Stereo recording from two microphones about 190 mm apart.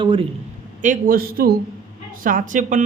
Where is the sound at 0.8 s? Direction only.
40° right (ahead or behind).